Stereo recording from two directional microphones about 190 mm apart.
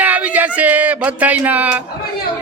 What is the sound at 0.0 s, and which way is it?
Speech, 10° right (ahead or behind).